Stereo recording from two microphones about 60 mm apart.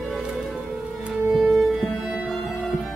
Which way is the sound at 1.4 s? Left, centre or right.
Centre.